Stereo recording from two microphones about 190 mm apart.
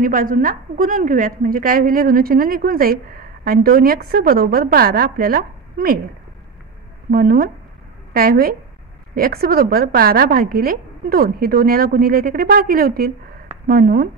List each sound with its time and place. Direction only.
0.0 s a woman's voice: 45° right (ahead or behind)
7.1 s a woman's voice: 50° right (ahead or behind)